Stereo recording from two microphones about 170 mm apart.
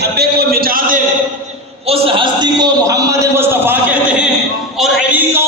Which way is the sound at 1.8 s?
30° right (ahead or behind).